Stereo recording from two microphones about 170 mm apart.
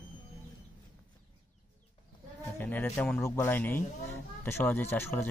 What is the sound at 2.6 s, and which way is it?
Speech, 10° left (ahead or behind).